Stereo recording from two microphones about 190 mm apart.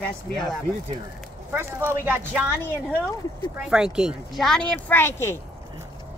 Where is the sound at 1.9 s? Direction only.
10° right (ahead or behind); by 5.3 s 10° left (ahead or behind).